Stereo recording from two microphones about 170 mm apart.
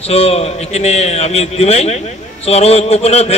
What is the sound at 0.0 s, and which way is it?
A man's voice, 35° left (ahead or behind).